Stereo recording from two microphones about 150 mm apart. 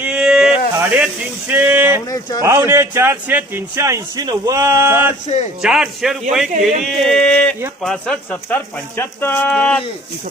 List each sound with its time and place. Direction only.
0.0 s a sound: 5° right (ahead or behind)
2.0 s speech: 25° left (ahead or behind)
2.4 s a man's voice: 20° right (ahead or behind)
5.6 s speech: 5° right (ahead or behind)
6.5 s speech: 55° right (ahead or behind)
6.8 s speech: centre (ahead or behind)